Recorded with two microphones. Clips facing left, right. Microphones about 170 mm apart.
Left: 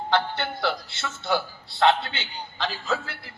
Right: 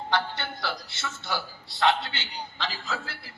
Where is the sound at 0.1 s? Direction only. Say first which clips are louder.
Left 4 dB; 55° left (ahead or behind).